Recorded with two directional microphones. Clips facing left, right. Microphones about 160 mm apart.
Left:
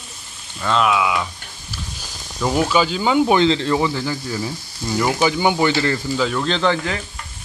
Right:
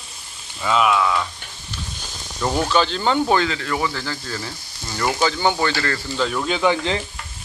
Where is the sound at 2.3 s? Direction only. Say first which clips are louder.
Left 2 dB; 5° left (ahead or behind).